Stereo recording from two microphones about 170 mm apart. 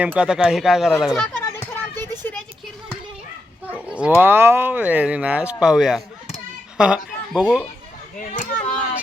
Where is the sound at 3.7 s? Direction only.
5° right (ahead or behind).